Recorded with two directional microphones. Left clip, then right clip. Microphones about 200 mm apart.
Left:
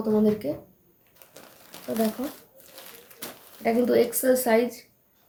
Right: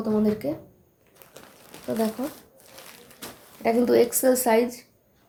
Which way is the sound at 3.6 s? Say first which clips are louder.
Right 2 dB; 35° right (ahead or behind).